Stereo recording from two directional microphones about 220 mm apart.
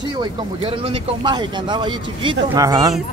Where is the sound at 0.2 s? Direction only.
20° right (ahead or behind).